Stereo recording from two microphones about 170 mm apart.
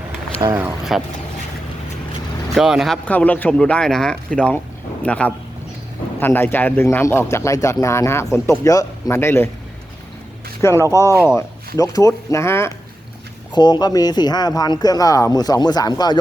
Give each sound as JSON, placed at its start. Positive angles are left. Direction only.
{"t": 0.4, "sound": "speech", "side_deg": -15}
{"t": 0.9, "sound": "speech", "side_deg": 0}
{"t": 2.6, "sound": "speech", "side_deg": 0}
{"t": 10.6, "sound": "speech", "side_deg": 15}
{"t": 11.8, "sound": "speech", "side_deg": 20}
{"t": 13.5, "sound": "speech", "side_deg": 25}